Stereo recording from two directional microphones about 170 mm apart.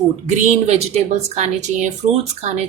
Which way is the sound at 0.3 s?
40° right (ahead or behind).